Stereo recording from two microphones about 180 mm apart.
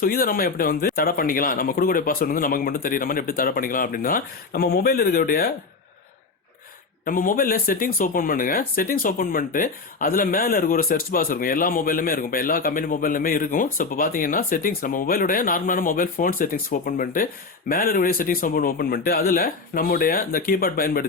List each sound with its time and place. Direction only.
0.0 s speech: 55° left (ahead or behind)
7.0 s speech: 50° left (ahead or behind)